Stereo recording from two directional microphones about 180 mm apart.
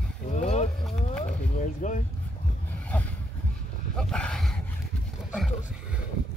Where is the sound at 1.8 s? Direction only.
45° left (ahead or behind).